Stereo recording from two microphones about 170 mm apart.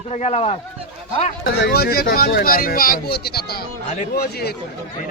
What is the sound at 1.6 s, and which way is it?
Speech, 65° left (ahead or behind).